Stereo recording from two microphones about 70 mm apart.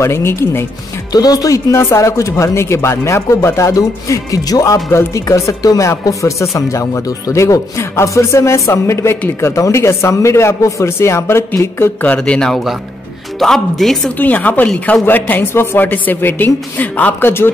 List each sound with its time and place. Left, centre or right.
0.0 s speech: left
1.1 s speech: left
12.2 s speech: centre
14.1 s a woman's voice: left